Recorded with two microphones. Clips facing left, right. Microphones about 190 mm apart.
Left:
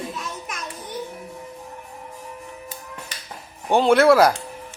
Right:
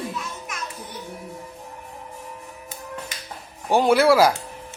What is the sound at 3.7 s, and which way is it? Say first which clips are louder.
Speech: left 2 dB; 5° right (ahead or behind).